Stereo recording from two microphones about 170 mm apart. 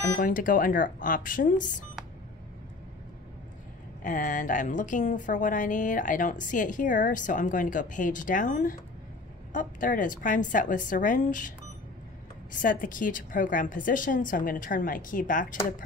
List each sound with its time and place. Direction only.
0.2 s a woman's voice: 55° left (ahead or behind)
4.0 s a woman's voice: 50° left (ahead or behind)
12.6 s a woman's voice: 50° left (ahead or behind)